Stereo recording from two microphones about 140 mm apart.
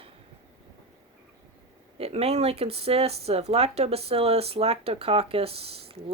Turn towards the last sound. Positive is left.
turn(degrees=-45)  # may be behind; listen again after turning